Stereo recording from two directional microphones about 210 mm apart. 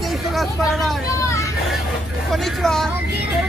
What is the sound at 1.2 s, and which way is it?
Hubbub, 15° left (ahead or behind).